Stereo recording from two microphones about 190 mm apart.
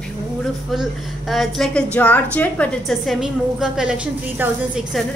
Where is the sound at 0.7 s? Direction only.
Centre (ahead or behind).